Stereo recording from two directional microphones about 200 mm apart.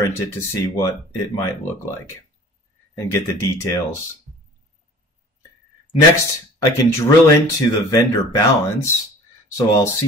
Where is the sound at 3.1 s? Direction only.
15° left (ahead or behind).